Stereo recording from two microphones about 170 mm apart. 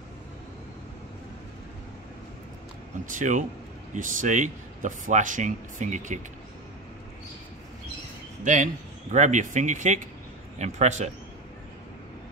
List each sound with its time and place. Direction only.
3.1 s speech: 45° right (ahead or behind)
9.1 s speech: 45° right (ahead or behind)